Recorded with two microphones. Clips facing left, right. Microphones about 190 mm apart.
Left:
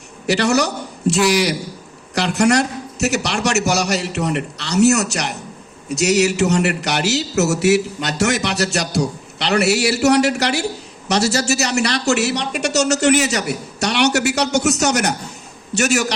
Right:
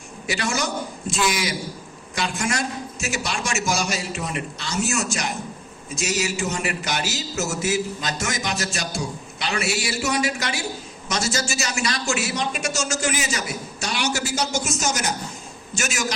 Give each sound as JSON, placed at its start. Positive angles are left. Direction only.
{"t": 0.3, "sound": "a man's voice", "side_deg": 70}